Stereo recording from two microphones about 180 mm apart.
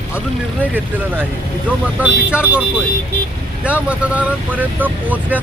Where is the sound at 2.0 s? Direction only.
5° right (ahead or behind).